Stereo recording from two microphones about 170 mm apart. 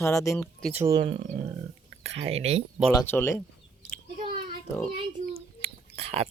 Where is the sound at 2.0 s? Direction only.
35° right (ahead or behind).